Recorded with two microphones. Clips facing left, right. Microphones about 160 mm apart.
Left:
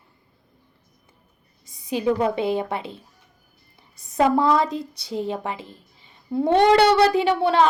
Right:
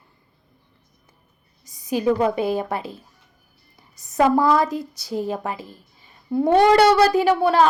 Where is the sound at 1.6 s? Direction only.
25° left (ahead or behind).